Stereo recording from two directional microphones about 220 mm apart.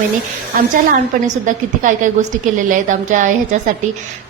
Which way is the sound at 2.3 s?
35° right (ahead or behind).